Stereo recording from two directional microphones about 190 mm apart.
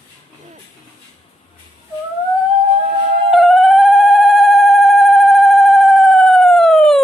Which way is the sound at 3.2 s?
Centre (ahead or behind).